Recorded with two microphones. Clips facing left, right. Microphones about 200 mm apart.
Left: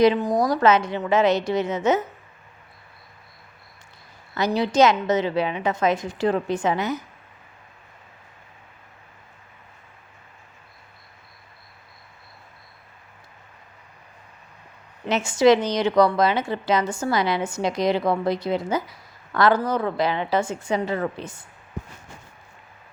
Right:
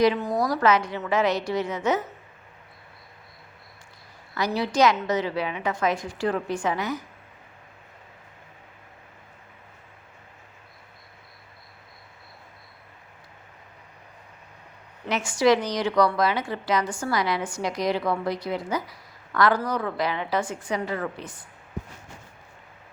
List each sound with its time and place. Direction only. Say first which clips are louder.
0.0 s a woman's voice: left 4 dB; 20° left (ahead or behind)
4.4 s a woman's voice: left 4 dB; 20° left (ahead or behind)
15.0 s a woman's voice: left 4 dB; 25° left (ahead or behind)